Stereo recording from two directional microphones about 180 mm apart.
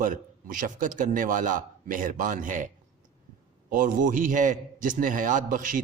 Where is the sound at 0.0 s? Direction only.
50° right (ahead or behind).